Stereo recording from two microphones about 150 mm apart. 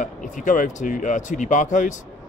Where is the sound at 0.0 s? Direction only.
60° left (ahead or behind).